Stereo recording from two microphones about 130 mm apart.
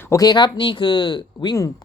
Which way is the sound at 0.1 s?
30° left (ahead or behind).